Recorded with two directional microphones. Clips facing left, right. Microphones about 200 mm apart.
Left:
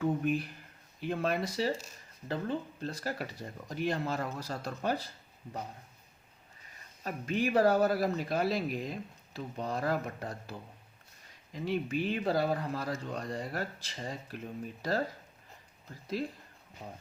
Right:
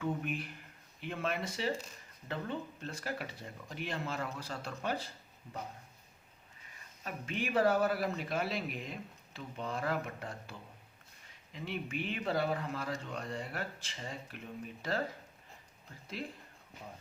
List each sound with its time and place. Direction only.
0.0 s a sound: 35° left (ahead or behind)
1.0 s speech: 35° left (ahead or behind)
7.0 s speech: 40° left (ahead or behind)
11.5 s speech: 40° left (ahead or behind)